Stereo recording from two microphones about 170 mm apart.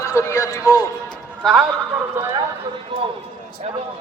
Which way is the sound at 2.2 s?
15° right (ahead or behind).